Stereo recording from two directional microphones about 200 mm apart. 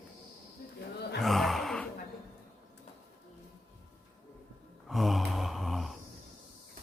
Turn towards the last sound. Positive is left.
turn(degrees=0)  # may be behind; listen again after turning